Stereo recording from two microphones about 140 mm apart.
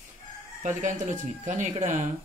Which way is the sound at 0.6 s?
60° right (ahead or behind).